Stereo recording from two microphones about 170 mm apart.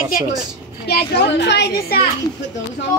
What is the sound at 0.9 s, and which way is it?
A child's voice, 70° left (ahead or behind).